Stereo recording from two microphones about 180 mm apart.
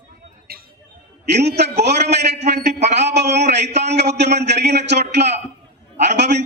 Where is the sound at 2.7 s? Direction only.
40° right (ahead or behind).